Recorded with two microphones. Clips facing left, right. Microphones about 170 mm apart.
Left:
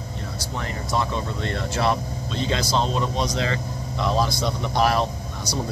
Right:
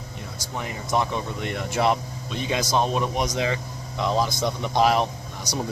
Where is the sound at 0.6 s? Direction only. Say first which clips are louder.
Right 1 dB; 15° right (ahead or behind).